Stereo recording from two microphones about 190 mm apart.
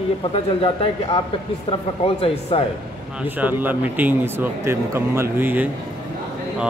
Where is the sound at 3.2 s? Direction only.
10° right (ahead or behind).